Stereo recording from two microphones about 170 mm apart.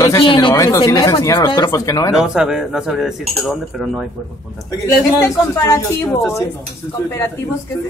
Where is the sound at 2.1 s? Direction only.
5° right (ahead or behind).